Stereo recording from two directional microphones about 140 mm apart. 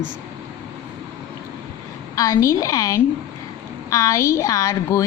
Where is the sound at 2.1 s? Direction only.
25° left (ahead or behind).